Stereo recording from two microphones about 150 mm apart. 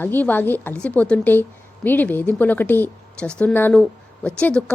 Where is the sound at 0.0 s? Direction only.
10° left (ahead or behind).